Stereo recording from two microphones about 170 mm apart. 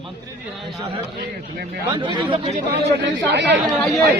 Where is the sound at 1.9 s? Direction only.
30° right (ahead or behind).